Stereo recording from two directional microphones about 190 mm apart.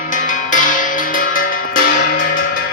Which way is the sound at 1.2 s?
45° left (ahead or behind).